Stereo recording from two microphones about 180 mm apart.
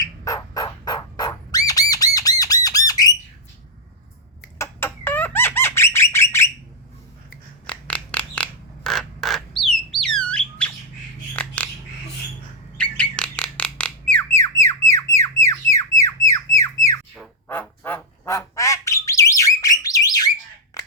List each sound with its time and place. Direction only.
0.0 s squawk: 20° left (ahead or behind)
4.5 s squawk: 15° left (ahead or behind)
7.7 s a sound: 5° left (ahead or behind)
12.7 s bird: 5° left (ahead or behind)
17.5 s squawk: 10° left (ahead or behind)